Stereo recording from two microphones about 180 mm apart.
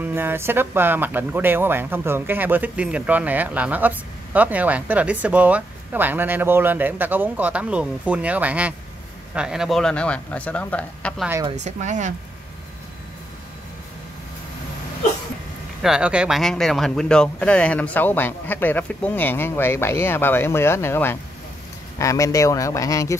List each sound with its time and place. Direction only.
0.0 s speech: 10° right (ahead or behind); by 11.2 s 5° left (ahead or behind)
11.5 s speech: 40° right (ahead or behind)
15.8 s speech: 5° right (ahead or behind); by 23.1 s 20° left (ahead or behind)